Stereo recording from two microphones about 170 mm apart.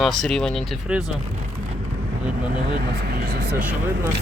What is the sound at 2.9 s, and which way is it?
Speech, 65° right (ahead or behind).